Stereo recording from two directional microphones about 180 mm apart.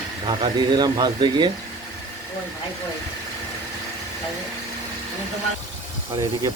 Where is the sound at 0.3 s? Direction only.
25° right (ahead or behind).